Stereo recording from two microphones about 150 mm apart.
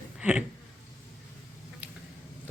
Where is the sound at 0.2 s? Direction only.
5° right (ahead or behind).